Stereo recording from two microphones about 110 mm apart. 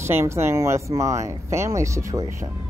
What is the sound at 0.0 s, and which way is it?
Speech, 25° right (ahead or behind).